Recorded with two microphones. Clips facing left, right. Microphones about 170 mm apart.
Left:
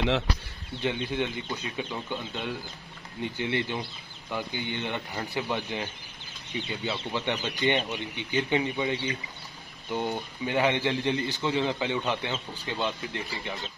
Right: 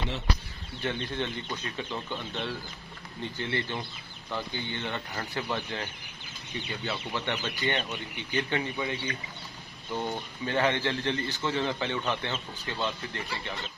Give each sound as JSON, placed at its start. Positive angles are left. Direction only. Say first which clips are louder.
{"t": 0.8, "sound": "a man's voice", "louder": "left 3 dB", "side_deg": 10}